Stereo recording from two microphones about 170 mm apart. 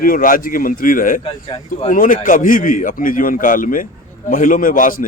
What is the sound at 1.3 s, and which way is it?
Speech, 30° left (ahead or behind).